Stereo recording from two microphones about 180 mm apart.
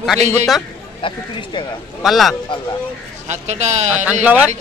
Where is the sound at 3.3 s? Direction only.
40° right (ahead or behind).